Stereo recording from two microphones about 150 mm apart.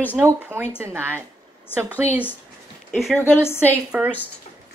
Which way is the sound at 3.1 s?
15° left (ahead or behind).